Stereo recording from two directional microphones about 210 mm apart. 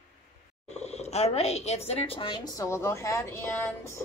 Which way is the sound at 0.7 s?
30° left (ahead or behind).